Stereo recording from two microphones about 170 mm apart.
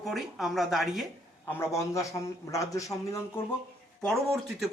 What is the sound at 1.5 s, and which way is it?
A man's voice, 15° left (ahead or behind).